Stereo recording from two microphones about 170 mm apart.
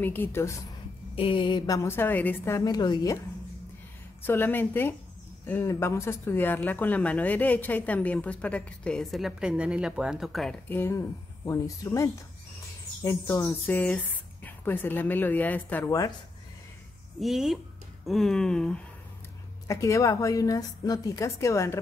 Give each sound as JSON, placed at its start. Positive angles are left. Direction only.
{"t": 0.0, "sound": "speech", "side_deg": 10}
{"t": 1.1, "sound": "speech", "side_deg": 30}
{"t": 1.8, "sound": "speech", "side_deg": 15}
{"t": 4.3, "sound": "speech", "side_deg": 10}
{"t": 10.7, "sound": "a woman's voice", "side_deg": 15}
{"t": 17.2, "sound": "speech", "side_deg": 0}
{"t": 19.7, "sound": "a woman's voice", "side_deg": 20}